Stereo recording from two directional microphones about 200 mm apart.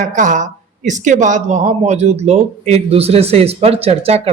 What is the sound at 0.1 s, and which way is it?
A man's voice, 40° right (ahead or behind).